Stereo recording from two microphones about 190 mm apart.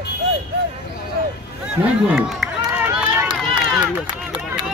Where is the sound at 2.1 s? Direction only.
5° right (ahead or behind).